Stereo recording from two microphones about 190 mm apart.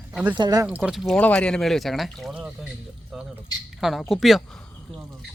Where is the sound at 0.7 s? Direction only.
5° right (ahead or behind).